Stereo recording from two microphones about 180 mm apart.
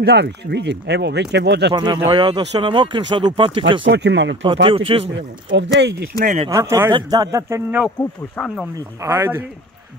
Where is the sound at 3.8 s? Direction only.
80° right.